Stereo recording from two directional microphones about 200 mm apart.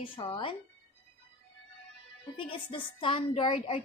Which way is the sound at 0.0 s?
25° left (ahead or behind).